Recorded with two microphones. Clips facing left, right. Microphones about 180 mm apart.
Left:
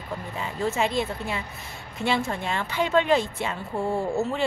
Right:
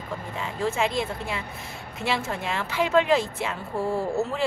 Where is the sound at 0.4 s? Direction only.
Centre (ahead or behind).